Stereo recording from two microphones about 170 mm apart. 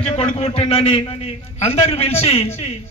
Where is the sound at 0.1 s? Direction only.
35° left (ahead or behind).